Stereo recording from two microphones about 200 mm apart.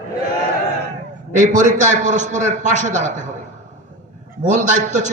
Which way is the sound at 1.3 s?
40° right (ahead or behind).